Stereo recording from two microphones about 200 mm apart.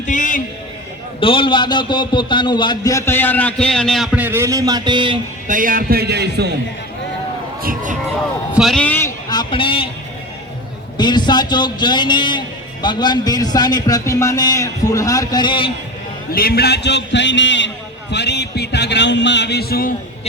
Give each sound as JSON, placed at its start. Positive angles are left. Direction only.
{"t": 0.0, "sound": "a man's voice", "side_deg": 40}
{"t": 1.2, "sound": "a man's voice", "side_deg": 25}
{"t": 5.5, "sound": "a man's voice", "side_deg": -45}
{"t": 7.6, "sound": "a sound", "side_deg": -45}
{"t": 8.5, "sound": "a man's voice", "side_deg": 0}
{"t": 10.9, "sound": "a man's voice", "side_deg": 20}
{"t": 16.3, "sound": "a man's voice", "side_deg": 50}